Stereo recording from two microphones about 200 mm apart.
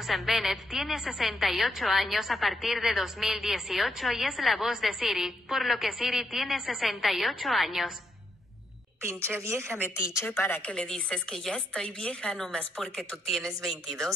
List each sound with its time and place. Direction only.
0.0 s a woman's voice: centre (ahead or behind)
9.0 s a woman's voice: 15° right (ahead or behind)
10.2 s a woman's voice: 10° left (ahead or behind)